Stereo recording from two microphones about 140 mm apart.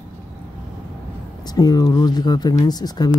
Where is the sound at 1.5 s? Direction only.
30° left (ahead or behind).